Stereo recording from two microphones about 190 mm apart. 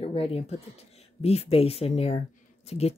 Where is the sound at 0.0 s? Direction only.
30° left (ahead or behind).